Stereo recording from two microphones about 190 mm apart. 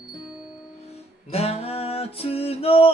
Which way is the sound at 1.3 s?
30° left (ahead or behind).